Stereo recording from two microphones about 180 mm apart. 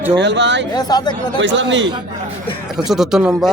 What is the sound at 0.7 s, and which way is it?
Speech, 20° left (ahead or behind).